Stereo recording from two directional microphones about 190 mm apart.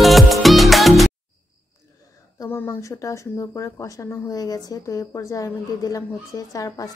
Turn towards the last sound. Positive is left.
turn(degrees=20)  # may be behind; listen again after turning